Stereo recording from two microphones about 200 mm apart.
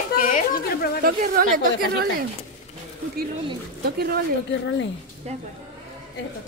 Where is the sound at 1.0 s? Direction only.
45° right (ahead or behind).